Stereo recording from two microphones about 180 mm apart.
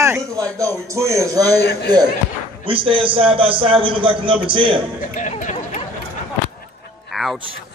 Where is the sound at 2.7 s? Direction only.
30° right (ahead or behind).